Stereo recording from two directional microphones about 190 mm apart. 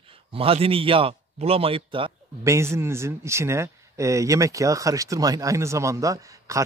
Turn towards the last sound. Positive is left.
turn(degrees=-15)  # may be behind; listen again after turning